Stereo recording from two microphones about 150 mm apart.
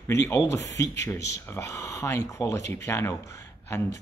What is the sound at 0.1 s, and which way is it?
Speech, 15° left (ahead or behind).